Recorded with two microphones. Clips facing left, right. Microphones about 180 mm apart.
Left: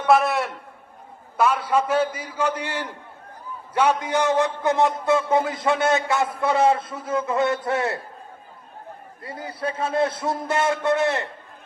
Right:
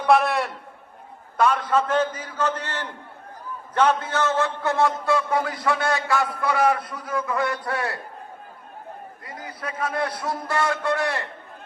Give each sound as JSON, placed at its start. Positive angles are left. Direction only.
{"t": 0.0, "sound": "a man's voice", "side_deg": 0}
{"t": 9.2, "sound": "a man's voice", "side_deg": 30}